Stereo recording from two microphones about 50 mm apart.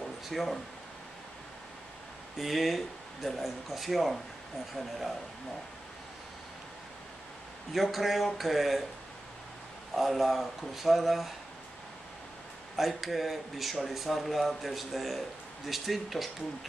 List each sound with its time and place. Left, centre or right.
0.3 s speech: centre
2.3 s speech: centre
7.7 s speech: centre
9.9 s speech: centre
12.7 s speech: centre